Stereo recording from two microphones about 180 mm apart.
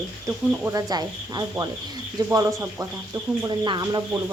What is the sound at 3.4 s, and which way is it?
Speech, 25° right (ahead or behind).